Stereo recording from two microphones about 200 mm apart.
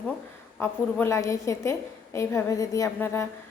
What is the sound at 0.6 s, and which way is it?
A woman's voice, 10° left (ahead or behind).